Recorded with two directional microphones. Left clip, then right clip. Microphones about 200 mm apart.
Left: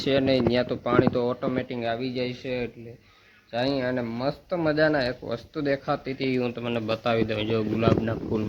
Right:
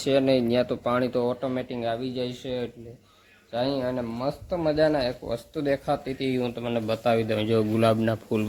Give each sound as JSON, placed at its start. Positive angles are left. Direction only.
{"t": 0.0, "sound": "speech", "side_deg": -10}
{"t": 5.3, "sound": "speech", "side_deg": -10}
{"t": 7.8, "sound": "speech", "side_deg": -55}